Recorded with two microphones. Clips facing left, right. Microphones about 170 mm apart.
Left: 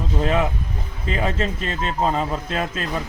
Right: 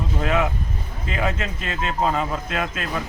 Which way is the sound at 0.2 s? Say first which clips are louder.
Left 1 dB; 30° left (ahead or behind).